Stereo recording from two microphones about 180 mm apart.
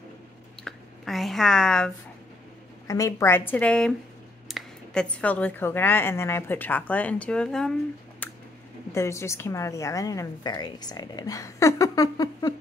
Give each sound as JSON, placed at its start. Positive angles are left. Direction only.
{"t": 0.7, "sound": "speech", "side_deg": 0}
{"t": 2.9, "sound": "a woman's voice", "side_deg": 15}
{"t": 8.2, "sound": "a sound", "side_deg": 10}
{"t": 8.9, "sound": "a woman's voice", "side_deg": 15}